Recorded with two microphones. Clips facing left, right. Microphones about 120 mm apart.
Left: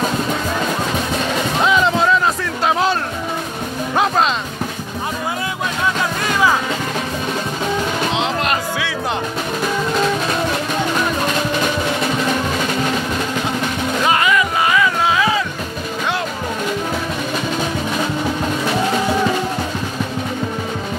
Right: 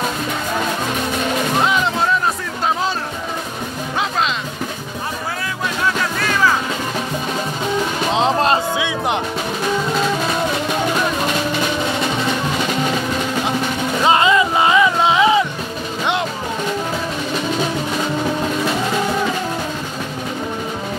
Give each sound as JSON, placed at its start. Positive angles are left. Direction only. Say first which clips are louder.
{"t": 2.6, "sound": "music", "louder": "left 3 dB", "side_deg": 75}
{"t": 3.9, "sound": "music", "louder": "left 5 dB", "side_deg": 50}
{"t": 8.1, "sound": "music", "louder": "right 4 dB", "side_deg": -35}
{"t": 14.0, "sound": "music", "louder": "right 3 dB", "side_deg": -25}